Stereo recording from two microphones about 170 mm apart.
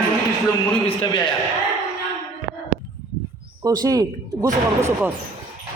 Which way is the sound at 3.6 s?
20° right (ahead or behind).